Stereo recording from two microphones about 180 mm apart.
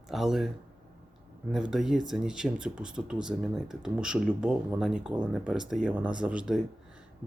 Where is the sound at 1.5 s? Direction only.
Centre (ahead or behind).